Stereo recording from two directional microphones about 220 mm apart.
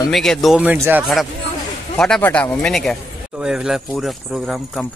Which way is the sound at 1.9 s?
5° left (ahead or behind).